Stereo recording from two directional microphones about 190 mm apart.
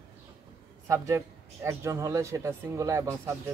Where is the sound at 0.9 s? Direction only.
15° right (ahead or behind).